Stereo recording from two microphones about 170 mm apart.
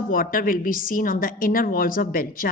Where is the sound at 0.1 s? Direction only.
55° left (ahead or behind).